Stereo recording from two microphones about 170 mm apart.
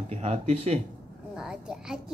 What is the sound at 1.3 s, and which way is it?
Speech, 5° right (ahead or behind).